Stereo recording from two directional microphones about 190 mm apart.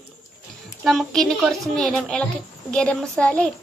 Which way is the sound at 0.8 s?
Centre (ahead or behind).